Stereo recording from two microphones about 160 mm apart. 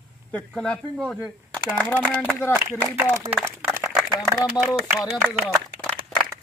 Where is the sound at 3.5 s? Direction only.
15° right (ahead or behind).